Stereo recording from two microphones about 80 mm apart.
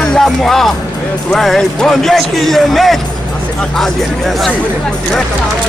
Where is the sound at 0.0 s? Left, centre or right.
Centre.